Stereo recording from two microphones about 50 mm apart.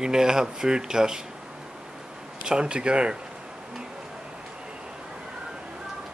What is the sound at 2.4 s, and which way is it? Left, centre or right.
Speech, centre.